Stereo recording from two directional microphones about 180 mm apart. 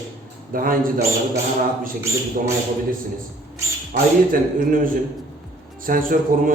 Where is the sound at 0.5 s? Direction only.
50° right (ahead or behind).